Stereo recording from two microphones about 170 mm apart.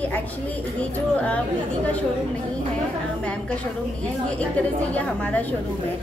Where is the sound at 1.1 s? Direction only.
10° left (ahead or behind).